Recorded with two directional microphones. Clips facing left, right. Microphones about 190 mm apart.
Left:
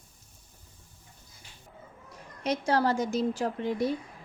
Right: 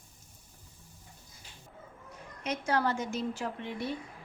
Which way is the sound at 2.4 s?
35° left (ahead or behind).